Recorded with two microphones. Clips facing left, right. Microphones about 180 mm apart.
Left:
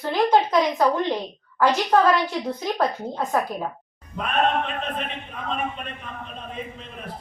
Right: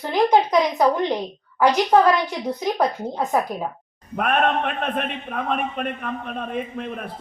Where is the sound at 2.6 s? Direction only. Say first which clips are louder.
Right 4 dB; 15° right (ahead or behind).